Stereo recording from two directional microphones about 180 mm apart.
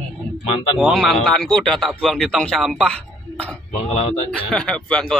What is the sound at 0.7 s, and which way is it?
Speech, centre (ahead or behind).